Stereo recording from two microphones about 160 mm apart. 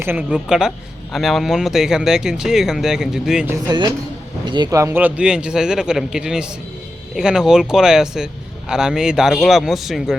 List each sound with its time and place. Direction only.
0.0 s speech: 10° right (ahead or behind)
3.7 s speech: 30° right (ahead or behind); by 10.2 s centre (ahead or behind)